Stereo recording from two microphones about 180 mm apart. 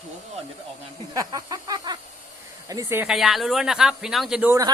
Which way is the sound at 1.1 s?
20° right (ahead or behind).